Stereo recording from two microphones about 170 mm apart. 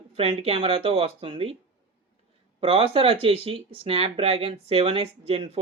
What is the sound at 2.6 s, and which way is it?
Speech, 35° right (ahead or behind).